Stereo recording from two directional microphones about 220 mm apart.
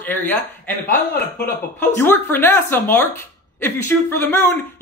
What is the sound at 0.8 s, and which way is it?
Speech, 40° left (ahead or behind).